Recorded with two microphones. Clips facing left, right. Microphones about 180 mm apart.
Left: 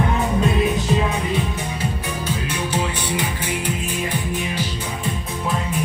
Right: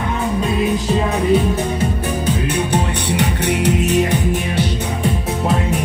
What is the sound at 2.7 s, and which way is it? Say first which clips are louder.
Music: right 4 dB; 70° right (ahead or behind).